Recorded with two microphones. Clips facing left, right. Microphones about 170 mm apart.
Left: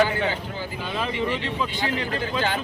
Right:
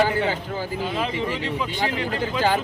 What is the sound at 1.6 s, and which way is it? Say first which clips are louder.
Speech: right 1 dB; 15° right (ahead or behind).